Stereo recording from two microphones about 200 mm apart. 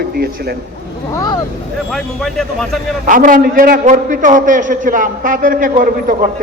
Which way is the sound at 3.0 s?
40° right (ahead or behind).